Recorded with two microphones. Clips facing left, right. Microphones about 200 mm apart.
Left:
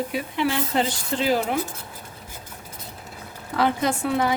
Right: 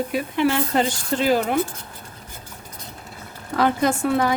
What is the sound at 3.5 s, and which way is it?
Speech, 45° right (ahead or behind).